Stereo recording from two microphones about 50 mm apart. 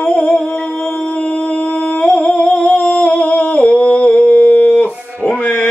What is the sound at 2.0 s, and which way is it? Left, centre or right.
Humming, centre.